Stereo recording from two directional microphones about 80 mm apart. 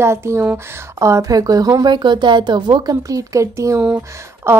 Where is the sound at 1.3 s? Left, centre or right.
Right.